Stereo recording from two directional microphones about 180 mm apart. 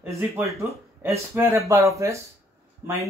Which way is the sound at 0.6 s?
15° right (ahead or behind).